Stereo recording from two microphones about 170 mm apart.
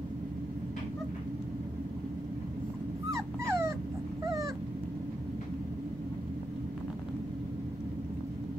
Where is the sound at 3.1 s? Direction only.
15° right (ahead or behind).